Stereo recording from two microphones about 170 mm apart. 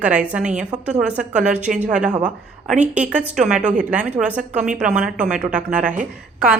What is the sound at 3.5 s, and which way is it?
Speech, 45° right (ahead or behind).